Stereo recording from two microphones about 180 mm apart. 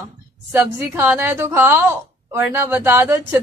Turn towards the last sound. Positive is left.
turn(degrees=-15)  # may be behind; listen again after turning